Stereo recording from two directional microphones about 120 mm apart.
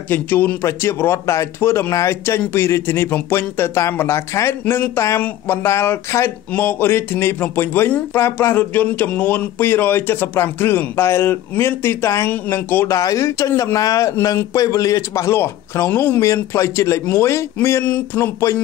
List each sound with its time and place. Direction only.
0.1 s speech: 15° left (ahead or behind)